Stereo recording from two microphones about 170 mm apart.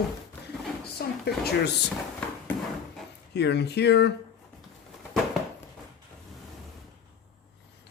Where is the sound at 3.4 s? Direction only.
80° left.